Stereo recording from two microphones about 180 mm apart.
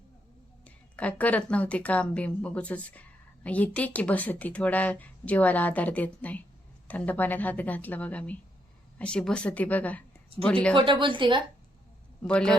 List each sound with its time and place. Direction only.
0.6 s speech: 10° left (ahead or behind)
10.8 s speech: 25° right (ahead or behind)
12.3 s speech: 5° left (ahead or behind)